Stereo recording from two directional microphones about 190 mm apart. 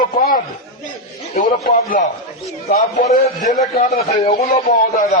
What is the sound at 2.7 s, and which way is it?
A man's voice, 40° left (ahead or behind).